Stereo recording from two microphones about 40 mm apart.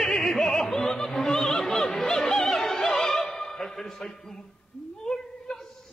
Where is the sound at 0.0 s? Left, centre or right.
Centre.